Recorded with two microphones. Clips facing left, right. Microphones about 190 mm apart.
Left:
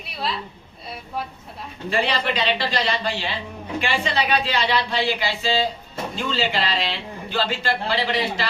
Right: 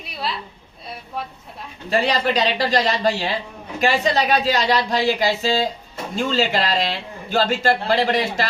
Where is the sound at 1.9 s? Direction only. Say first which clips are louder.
Right 4 dB; 40° right (ahead or behind).